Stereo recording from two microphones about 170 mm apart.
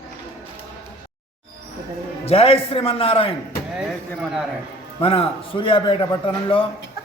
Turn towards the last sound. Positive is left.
turn(degrees=30)  # may be behind; listen again after turning